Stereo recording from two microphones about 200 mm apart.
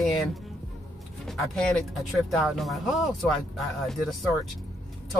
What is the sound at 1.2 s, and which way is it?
Speech, centre (ahead or behind).